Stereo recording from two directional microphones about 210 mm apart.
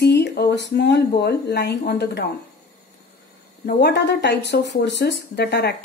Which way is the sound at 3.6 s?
50° left (ahead or behind).